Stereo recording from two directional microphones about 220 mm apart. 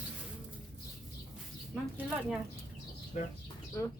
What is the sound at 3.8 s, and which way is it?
Speech, 15° left (ahead or behind).